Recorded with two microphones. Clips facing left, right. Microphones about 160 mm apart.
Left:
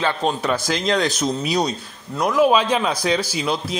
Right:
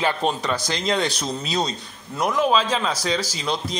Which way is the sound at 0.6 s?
Centre (ahead or behind).